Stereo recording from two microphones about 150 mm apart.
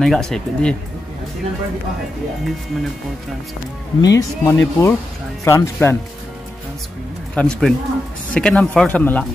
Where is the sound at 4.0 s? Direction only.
20° left (ahead or behind).